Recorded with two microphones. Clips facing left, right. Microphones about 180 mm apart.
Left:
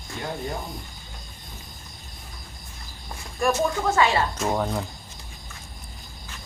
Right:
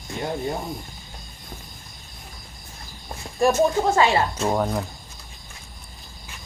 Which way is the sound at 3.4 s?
25° right (ahead or behind).